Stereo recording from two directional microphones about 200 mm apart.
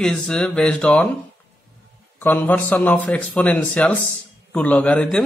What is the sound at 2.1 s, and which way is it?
Speech, 10° left (ahead or behind).